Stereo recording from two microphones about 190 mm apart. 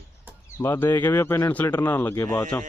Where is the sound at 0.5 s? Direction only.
15° left (ahead or behind).